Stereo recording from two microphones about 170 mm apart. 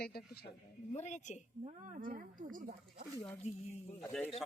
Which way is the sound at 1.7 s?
50° right (ahead or behind).